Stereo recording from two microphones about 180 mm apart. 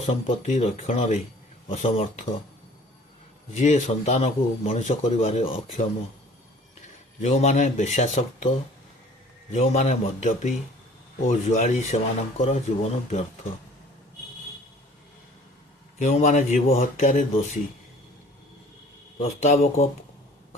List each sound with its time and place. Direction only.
0.0 s a man's voice: 40° left (ahead or behind)
3.5 s a man's voice: 40° left (ahead or behind)
6.8 s a man's voice: 40° left (ahead or behind)
16.0 s a man's voice: 40° left (ahead or behind)
19.2 s a man's voice: 35° left (ahead or behind)